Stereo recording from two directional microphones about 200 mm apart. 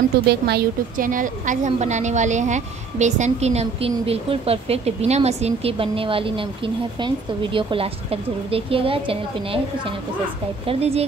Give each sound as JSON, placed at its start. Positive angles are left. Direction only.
{"t": 0.3, "sound": "a woman's voice", "side_deg": -55}